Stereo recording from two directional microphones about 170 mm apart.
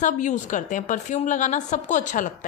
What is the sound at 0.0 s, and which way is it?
A woman's voice, 45° left (ahead or behind).